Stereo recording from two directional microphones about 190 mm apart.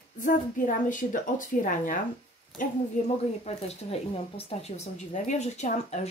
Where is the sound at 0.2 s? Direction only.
45° left (ahead or behind).